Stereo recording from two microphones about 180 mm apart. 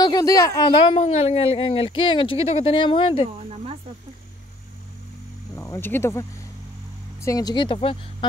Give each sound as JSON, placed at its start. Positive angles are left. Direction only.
{"t": 0.0, "sound": "speech", "side_deg": 20}
{"t": 5.6, "sound": "speech", "side_deg": 15}
{"t": 7.2, "sound": "speech", "side_deg": 20}